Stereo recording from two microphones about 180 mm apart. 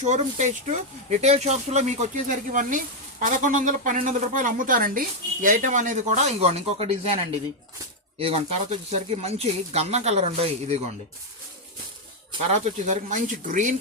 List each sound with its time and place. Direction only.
0.0 s speech: 40° right (ahead or behind)
8.2 s speech: 35° right (ahead or behind)
12.5 s speech: 40° right (ahead or behind)